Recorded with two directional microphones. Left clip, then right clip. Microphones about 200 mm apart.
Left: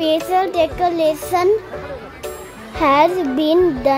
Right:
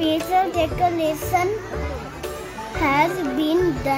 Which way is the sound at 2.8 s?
35° left (ahead or behind).